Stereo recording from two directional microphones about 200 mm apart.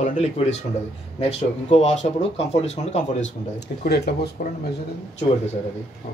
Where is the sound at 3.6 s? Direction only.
55° left (ahead or behind).